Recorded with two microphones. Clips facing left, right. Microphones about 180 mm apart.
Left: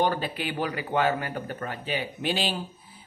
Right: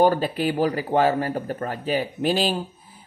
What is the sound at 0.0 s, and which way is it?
Speech, 40° right (ahead or behind).